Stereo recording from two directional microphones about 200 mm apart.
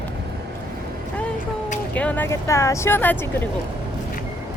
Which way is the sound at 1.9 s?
5° left (ahead or behind).